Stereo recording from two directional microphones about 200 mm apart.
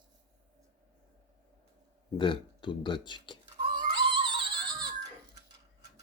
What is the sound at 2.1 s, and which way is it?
Speech, 25° left (ahead or behind).